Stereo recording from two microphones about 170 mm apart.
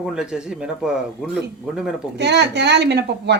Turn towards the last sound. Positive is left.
turn(degrees=-80)